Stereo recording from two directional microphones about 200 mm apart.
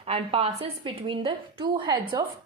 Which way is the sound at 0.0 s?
30° right (ahead or behind).